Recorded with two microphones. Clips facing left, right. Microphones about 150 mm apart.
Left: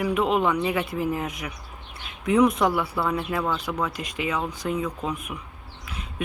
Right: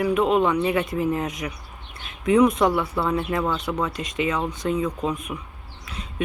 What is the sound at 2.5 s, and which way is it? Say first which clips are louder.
Speech: right 2 dB; 10° left (ahead or behind).